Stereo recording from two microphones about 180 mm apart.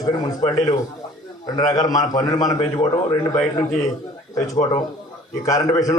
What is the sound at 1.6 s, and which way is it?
A man's voice, 20° left (ahead or behind).